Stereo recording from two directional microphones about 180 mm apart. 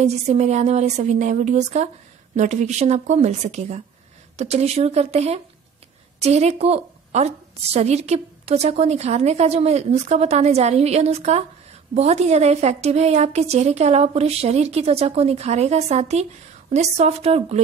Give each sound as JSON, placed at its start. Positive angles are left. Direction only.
{"t": 0.0, "sound": "a woman's voice", "side_deg": -40}